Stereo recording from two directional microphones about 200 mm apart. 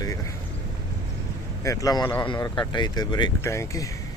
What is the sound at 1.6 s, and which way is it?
Speech, 20° left (ahead or behind).